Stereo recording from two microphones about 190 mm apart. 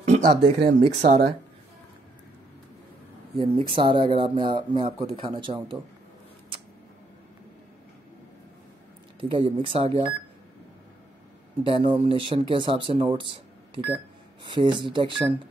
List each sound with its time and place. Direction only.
0.0 s speech: 30° right (ahead or behind)
3.3 s speech: 30° right (ahead or behind)
9.3 s speech: 30° right (ahead or behind)
11.6 s speech: 25° right (ahead or behind)
14.5 s speech: 25° right (ahead or behind)